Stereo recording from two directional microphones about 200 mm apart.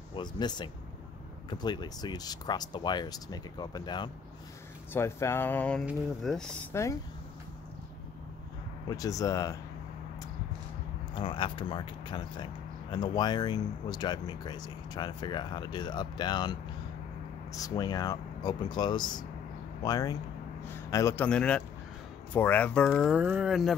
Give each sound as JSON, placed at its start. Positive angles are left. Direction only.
{"t": 0.1, "sound": "speech", "side_deg": 20}
{"t": 6.7, "sound": "speech", "side_deg": 15}
{"t": 8.8, "sound": "speech", "side_deg": 15}
{"t": 11.1, "sound": "speech", "side_deg": 25}
{"t": 23.1, "sound": "speech", "side_deg": -5}